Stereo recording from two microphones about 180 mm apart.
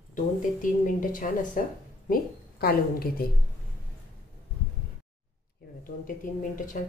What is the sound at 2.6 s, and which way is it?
Speech, 55° left (ahead or behind).